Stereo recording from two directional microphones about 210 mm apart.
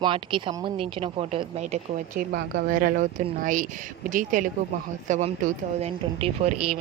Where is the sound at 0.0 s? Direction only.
20° right (ahead or behind).